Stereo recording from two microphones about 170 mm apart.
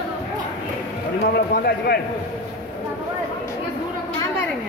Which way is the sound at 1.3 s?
65° left (ahead or behind).